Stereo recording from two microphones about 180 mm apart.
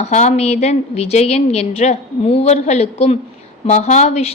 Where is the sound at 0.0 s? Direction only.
40° left (ahead or behind).